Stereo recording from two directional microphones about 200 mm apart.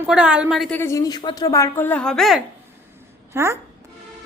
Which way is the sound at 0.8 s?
15° left (ahead or behind).